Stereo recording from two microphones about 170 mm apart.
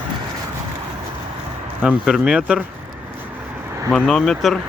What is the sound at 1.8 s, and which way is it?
Speech, 5° right (ahead or behind).